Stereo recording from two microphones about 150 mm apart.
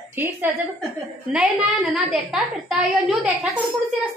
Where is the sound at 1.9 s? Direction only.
5° right (ahead or behind).